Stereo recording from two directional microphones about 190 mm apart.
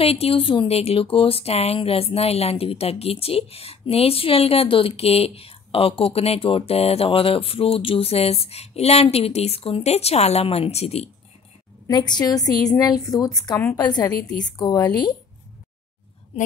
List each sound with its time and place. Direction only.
0.0 s speech: 30° left (ahead or behind)
11.9 s a woman's voice: 20° left (ahead or behind)